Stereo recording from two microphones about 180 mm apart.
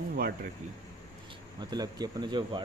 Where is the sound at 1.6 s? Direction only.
20° right (ahead or behind).